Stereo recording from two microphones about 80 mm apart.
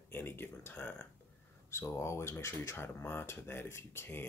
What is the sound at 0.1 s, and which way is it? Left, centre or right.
Speech, left.